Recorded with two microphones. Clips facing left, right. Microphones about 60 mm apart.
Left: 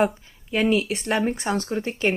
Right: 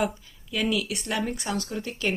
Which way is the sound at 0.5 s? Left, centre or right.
Left.